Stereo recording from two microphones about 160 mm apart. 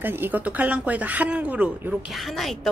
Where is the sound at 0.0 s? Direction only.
10° right (ahead or behind).